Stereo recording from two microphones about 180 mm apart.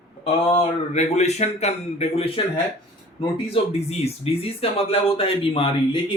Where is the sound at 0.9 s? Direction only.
40° left (ahead or behind).